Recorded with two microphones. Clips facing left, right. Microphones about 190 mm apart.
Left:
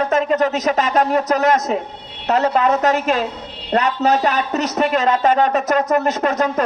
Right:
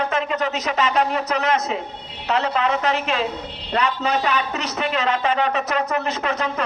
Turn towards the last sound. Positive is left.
turn(degrees=45)  # may be behind; listen again after turning